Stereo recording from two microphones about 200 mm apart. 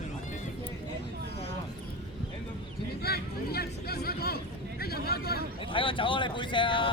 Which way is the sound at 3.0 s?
50° left (ahead or behind).